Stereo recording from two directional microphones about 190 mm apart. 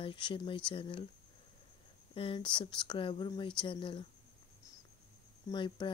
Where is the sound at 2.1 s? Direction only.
30° left (ahead or behind).